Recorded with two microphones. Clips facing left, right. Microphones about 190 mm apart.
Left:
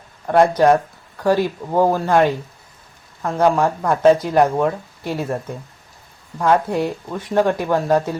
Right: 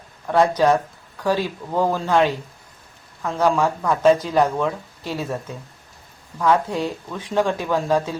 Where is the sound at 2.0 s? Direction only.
50° left (ahead or behind).